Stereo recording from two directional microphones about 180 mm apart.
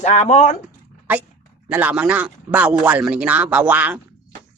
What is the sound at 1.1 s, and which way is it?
Speech, 10° right (ahead or behind).